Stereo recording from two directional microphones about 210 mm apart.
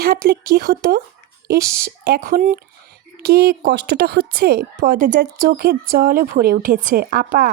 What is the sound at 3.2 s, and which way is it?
A woman's voice, 50° right (ahead or behind).